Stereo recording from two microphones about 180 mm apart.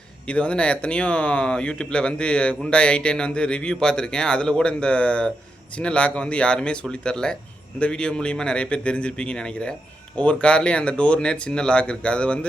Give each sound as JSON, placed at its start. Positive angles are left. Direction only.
{"t": 0.3, "sound": "speech", "side_deg": 5}